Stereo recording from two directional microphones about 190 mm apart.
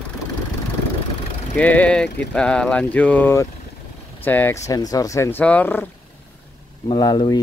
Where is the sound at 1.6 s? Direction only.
10° left (ahead or behind).